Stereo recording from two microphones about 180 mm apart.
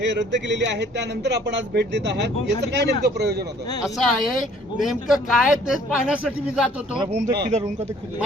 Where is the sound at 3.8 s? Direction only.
Centre (ahead or behind).